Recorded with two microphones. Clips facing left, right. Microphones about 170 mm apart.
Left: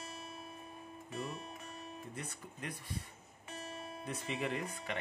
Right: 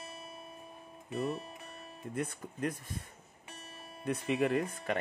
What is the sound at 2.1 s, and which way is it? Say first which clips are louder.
Speech: right 9 dB; 50° right (ahead or behind).